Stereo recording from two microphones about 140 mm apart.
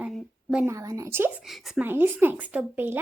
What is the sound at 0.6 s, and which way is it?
Speech, 25° right (ahead or behind).